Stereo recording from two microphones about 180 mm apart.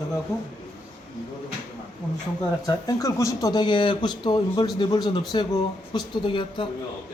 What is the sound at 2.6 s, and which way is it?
Speech, 20° left (ahead or behind).